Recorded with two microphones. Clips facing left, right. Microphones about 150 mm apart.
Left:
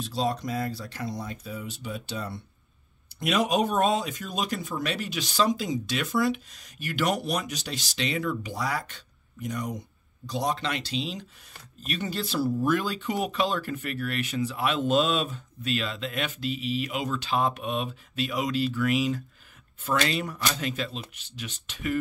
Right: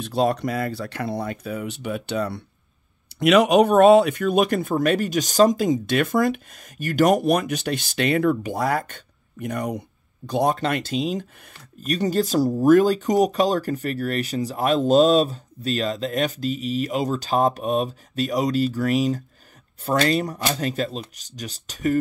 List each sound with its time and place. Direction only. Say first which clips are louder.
0.0 s speech: right 7 dB; 60° right (ahead or behind); by 21.9 s 40° right (ahead or behind)